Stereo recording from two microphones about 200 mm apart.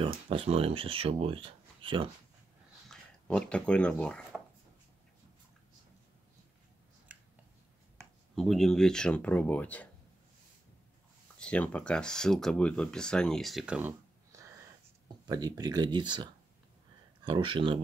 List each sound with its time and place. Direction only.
0.0 s speech: 25° right (ahead or behind)
2.9 s speech: 5° left (ahead or behind)
7.1 s a sound: 5° right (ahead or behind)
8.4 s speech: centre (ahead or behind)
11.3 s speech: 5° left (ahead or behind); by 17.7 s 25° right (ahead or behind)